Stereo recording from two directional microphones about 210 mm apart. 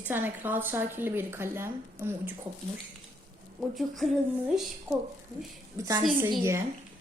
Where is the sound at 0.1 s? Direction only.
10° right (ahead or behind).